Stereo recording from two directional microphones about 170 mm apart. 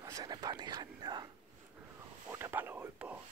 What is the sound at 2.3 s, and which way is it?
Whispering, 15° right (ahead or behind).